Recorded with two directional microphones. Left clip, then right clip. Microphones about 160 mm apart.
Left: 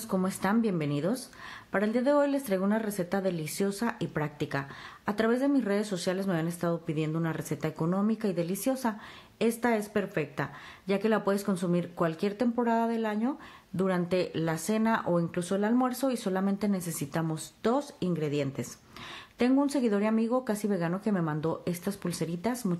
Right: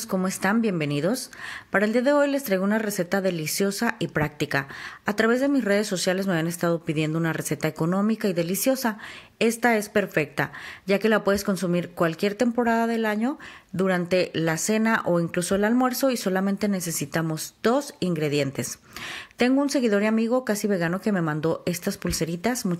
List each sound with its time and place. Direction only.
0.1 s speech: 10° right (ahead or behind)